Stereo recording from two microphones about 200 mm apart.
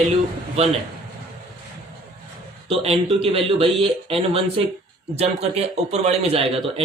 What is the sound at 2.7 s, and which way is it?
A man's voice, 30° right (ahead or behind).